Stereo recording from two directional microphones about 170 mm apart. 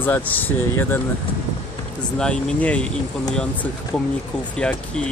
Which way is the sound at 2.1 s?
5° left (ahead or behind).